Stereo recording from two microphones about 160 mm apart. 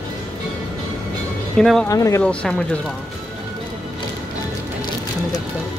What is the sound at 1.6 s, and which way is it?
Speech, centre (ahead or behind).